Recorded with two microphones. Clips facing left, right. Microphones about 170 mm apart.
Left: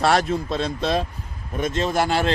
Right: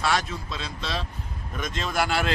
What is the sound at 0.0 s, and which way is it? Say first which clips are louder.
A man's voice: left 7 dB; 55° left (ahead or behind).